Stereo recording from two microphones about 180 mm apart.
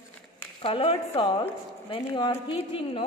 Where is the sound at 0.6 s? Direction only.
30° left (ahead or behind).